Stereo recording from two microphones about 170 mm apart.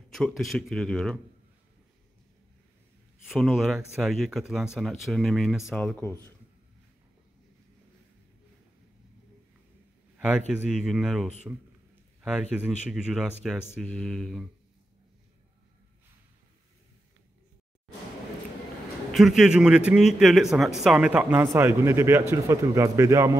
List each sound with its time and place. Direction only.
0.1 s a man's voice: centre (ahead or behind)
3.3 s a man's voice: centre (ahead or behind)
5.8 s speech: 10° left (ahead or behind)
10.1 s a sound: 5° right (ahead or behind)
10.5 s a man's voice: 5° right (ahead or behind)
19.1 s a man's voice: centre (ahead or behind); by 23.3 s 15° right (ahead or behind)